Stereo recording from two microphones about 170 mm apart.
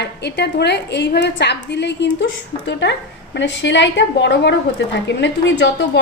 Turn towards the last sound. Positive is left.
turn(degrees=90)